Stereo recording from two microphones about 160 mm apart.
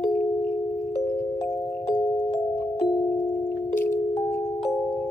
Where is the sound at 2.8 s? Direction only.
25° left (ahead or behind).